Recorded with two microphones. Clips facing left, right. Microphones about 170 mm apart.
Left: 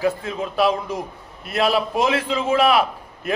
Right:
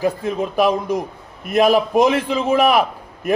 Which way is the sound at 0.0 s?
15° right (ahead or behind).